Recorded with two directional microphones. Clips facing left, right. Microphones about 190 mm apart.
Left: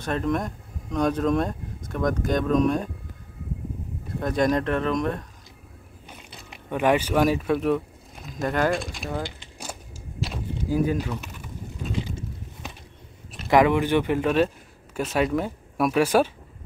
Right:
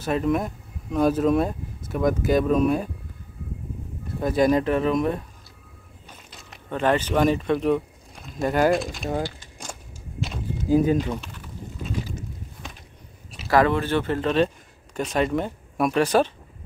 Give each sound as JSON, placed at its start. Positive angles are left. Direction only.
{"t": 0.0, "sound": "speech", "side_deg": -5}
{"t": 4.2, "sound": "speech", "side_deg": -5}
{"t": 6.0, "sound": "a sound", "side_deg": 10}
{"t": 8.5, "sound": "speech", "side_deg": -10}
{"t": 9.2, "sound": "keys jangling", "side_deg": 5}
{"t": 10.7, "sound": "speech", "side_deg": -25}
{"t": 11.1, "sound": "bird", "side_deg": 10}
{"t": 13.5, "sound": "speech", "side_deg": 15}